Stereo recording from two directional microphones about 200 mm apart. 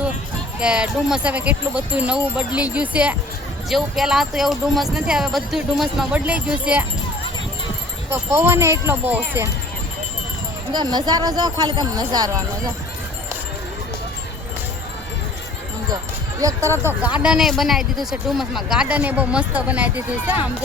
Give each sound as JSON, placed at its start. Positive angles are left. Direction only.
{"t": 0.6, "sound": "speech", "side_deg": -5}
{"t": 8.1, "sound": "speech", "side_deg": -10}
{"t": 10.7, "sound": "speech", "side_deg": -20}
{"t": 16.4, "sound": "speech", "side_deg": -15}